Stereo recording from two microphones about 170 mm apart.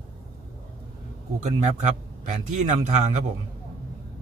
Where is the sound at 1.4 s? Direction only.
45° right (ahead or behind).